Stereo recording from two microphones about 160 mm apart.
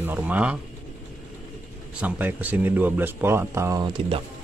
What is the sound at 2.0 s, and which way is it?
Speech, 10° right (ahead or behind).